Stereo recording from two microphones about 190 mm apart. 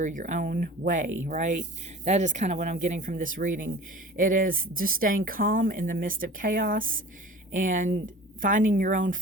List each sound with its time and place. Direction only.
0.0 s speech: 40° right (ahead or behind)